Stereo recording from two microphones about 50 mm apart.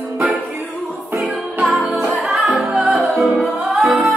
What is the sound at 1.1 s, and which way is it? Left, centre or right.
Music, centre.